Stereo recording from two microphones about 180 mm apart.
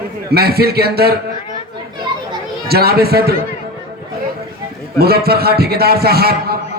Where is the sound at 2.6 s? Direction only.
60° right (ahead or behind).